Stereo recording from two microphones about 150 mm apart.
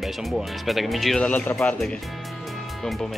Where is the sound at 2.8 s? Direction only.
Centre (ahead or behind).